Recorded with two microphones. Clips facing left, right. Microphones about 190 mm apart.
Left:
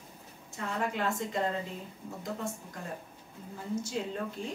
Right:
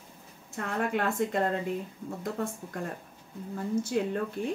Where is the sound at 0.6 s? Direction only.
55° right (ahead or behind).